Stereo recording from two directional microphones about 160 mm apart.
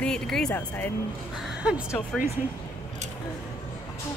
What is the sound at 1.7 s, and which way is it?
Speech, 5° right (ahead or behind).